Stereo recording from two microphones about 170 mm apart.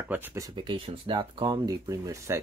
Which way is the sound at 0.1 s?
15° right (ahead or behind).